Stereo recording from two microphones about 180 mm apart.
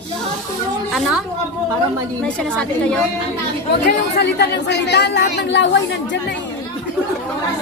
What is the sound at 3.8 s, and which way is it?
Speech, 70° left (ahead or behind).